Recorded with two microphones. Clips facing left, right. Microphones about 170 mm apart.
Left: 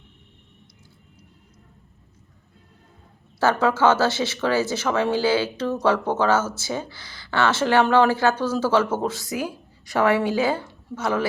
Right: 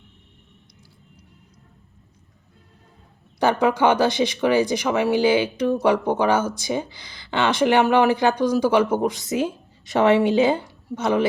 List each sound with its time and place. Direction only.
3.4 s speech: 15° right (ahead or behind)